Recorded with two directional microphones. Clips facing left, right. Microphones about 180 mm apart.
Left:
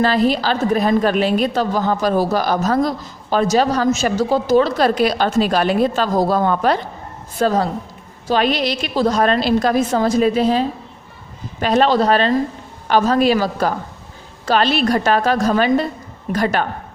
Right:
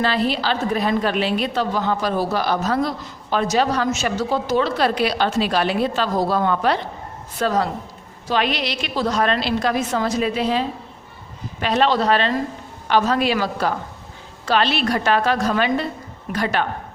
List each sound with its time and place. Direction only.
0.0 s a woman's voice: 45° left (ahead or behind)
7.3 s a woman's voice: 30° left (ahead or behind)
8.3 s a woman's voice: 40° left (ahead or behind)